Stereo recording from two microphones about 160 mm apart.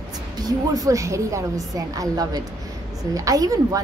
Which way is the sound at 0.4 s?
25° right (ahead or behind).